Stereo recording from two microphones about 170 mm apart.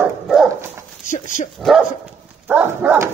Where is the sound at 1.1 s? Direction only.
50° left (ahead or behind).